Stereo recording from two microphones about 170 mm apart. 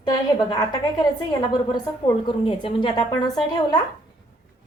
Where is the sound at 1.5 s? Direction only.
25° left (ahead or behind).